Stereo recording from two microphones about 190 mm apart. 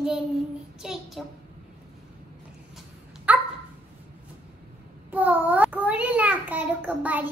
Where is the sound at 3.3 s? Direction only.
10° right (ahead or behind).